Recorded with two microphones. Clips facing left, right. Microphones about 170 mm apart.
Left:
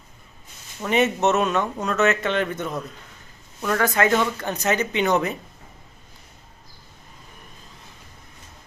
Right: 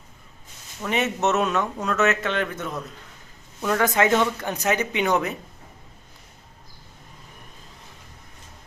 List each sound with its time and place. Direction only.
0.9 s speech: centre (ahead or behind)
3.6 s speech: 10° right (ahead or behind)